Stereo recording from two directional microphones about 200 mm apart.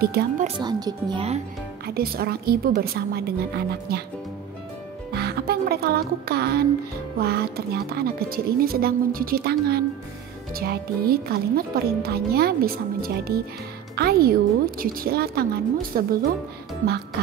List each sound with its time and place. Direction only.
0.0 s speech: 50° right (ahead or behind)
0.6 s speech: 20° right (ahead or behind)
2.0 s speech: 50° right (ahead or behind)
5.1 s speech: 50° right (ahead or behind)